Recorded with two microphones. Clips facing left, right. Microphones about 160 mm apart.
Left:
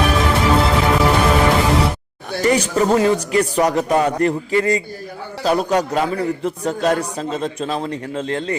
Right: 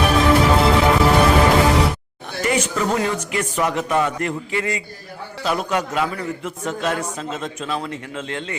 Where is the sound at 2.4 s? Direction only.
35° left (ahead or behind).